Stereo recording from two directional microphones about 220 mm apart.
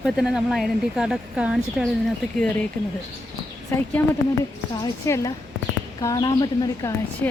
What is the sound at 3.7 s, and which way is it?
Speech, 10° left (ahead or behind).